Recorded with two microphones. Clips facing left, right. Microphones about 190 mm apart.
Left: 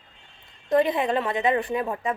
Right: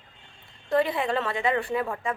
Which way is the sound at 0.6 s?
20° left (ahead or behind).